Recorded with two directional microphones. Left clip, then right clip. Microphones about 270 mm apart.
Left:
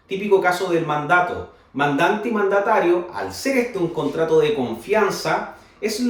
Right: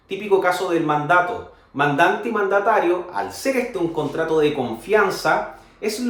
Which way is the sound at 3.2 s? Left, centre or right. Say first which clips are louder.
Right 2 dB; centre.